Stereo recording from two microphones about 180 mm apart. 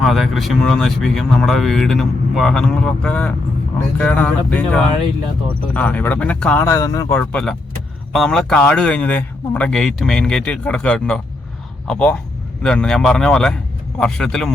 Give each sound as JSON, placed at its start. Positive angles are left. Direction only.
{"t": 0.0, "sound": "speech", "side_deg": 0}
{"t": 6.7, "sound": "speech", "side_deg": 20}
{"t": 7.2, "sound": "speech", "side_deg": 5}